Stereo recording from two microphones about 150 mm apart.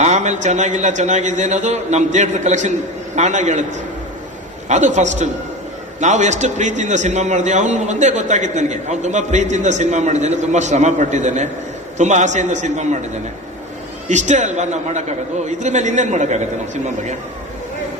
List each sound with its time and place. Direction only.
0.0 s a man's voice: 50° right (ahead or behind)
4.7 s a man's voice: 50° right (ahead or behind)
14.1 s a man's voice: 50° right (ahead or behind)